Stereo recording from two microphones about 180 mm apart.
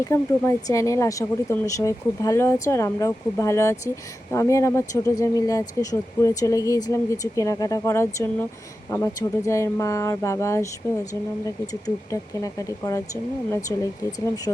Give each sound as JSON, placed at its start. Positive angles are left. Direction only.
{"t": 0.0, "sound": "speech", "side_deg": 15}